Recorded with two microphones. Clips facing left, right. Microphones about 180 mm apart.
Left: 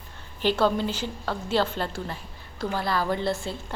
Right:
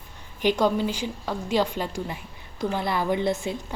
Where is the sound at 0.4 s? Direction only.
15° right (ahead or behind).